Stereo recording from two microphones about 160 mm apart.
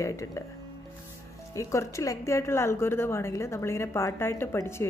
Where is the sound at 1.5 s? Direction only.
20° left (ahead or behind).